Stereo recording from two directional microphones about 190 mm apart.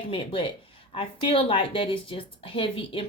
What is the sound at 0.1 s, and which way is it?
A woman's voice, 25° left (ahead or behind).